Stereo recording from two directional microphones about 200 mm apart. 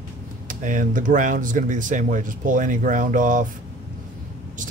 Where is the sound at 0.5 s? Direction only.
40° right (ahead or behind).